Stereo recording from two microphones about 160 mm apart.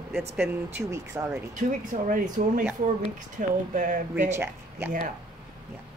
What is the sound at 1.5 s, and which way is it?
Speech, 55° right (ahead or behind).